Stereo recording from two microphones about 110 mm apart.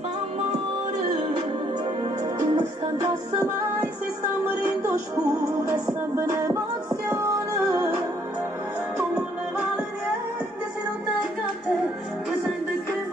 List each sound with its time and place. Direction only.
2.5 s music: 30° right (ahead or behind)
4.5 s music: 20° right (ahead or behind)